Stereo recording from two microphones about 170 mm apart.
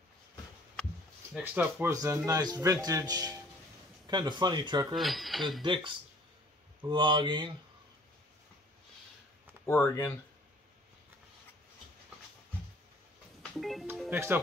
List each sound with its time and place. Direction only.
1.3 s speech: 10° right (ahead or behind)
4.9 s speech: centre (ahead or behind)
5.6 s speech: 30° right (ahead or behind)
9.7 s speech: 15° left (ahead or behind)
13.4 s music: centre (ahead or behind)
14.1 s speech: 10° right (ahead or behind)